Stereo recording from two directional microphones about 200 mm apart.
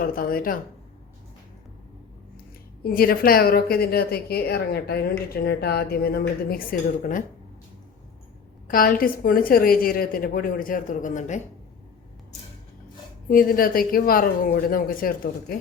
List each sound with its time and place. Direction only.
0.0 s a woman's voice: 45° left (ahead or behind)
2.8 s a woman's voice: 50° left (ahead or behind)
8.6 s a woman's voice: 45° left (ahead or behind)
13.3 s a woman's voice: 45° left (ahead or behind)